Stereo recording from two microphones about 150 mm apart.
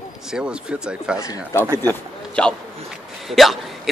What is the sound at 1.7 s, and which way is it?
Speech, 25° right (ahead or behind).